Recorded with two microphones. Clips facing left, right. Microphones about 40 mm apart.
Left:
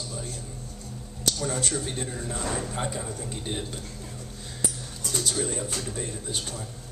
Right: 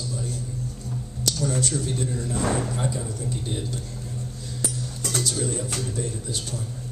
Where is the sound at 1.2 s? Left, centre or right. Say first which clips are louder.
Right 3 dB; left.